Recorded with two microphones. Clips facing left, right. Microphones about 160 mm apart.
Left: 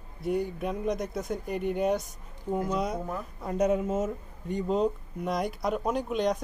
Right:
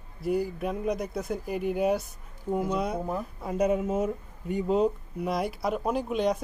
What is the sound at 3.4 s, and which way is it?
Speech, 5° right (ahead or behind).